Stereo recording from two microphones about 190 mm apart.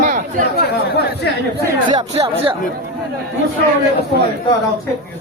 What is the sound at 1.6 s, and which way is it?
Speech, 20° right (ahead or behind).